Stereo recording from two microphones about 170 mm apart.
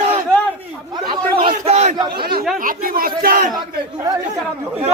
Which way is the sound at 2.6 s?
60° right (ahead or behind).